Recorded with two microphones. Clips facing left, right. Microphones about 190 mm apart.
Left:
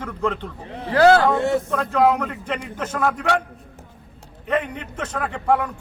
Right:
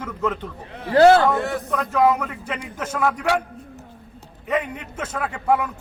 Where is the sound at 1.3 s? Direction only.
25° left (ahead or behind).